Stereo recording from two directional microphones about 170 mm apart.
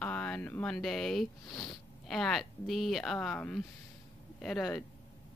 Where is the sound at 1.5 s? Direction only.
20° left (ahead or behind).